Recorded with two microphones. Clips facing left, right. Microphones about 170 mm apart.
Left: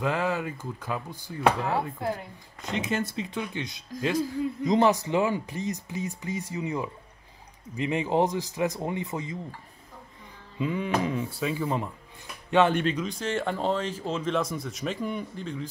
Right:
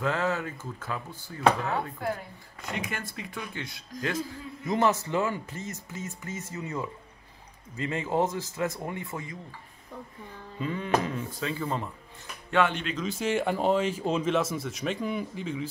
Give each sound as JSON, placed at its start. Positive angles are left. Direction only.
{"t": 0.0, "sound": "speech", "side_deg": 15}
{"t": 1.6, "sound": "speech", "side_deg": 30}
{"t": 10.6, "sound": "speech", "side_deg": 15}
{"t": 13.0, "sound": "speech", "side_deg": -5}
{"t": 14.3, "sound": "speech", "side_deg": -5}